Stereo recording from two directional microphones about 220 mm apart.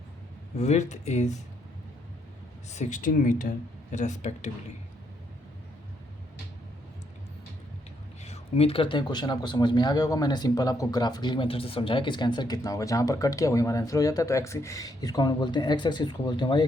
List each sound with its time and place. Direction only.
0.5 s speech: 30° left (ahead or behind)
2.6 s speech: 30° left (ahead or behind)
8.2 s speech: 30° left (ahead or behind)